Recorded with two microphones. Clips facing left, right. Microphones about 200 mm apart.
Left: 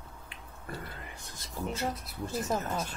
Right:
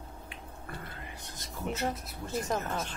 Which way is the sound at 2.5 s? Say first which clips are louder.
Left 1 dB; 10° left (ahead or behind).